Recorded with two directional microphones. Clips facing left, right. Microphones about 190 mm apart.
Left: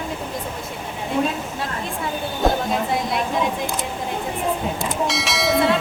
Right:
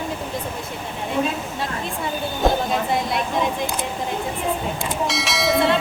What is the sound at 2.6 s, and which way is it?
Speech, centre (ahead or behind).